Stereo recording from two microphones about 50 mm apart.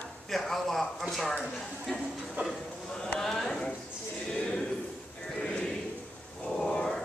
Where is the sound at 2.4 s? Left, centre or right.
Centre.